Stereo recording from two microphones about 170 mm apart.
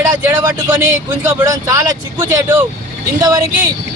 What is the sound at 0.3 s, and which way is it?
Speech, 15° right (ahead or behind).